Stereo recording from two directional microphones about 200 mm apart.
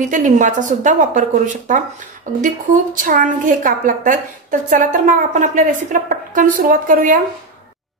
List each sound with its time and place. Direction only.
0.0 s a woman's voice: 40° right (ahead or behind)